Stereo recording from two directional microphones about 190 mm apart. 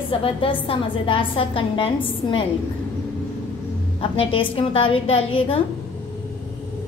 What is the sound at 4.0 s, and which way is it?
A woman's voice, 30° left (ahead or behind).